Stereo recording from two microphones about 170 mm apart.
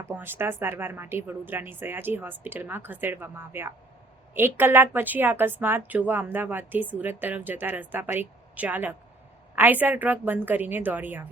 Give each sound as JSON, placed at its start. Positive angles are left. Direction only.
{"t": 0.0, "sound": "a woman's voice", "side_deg": -15}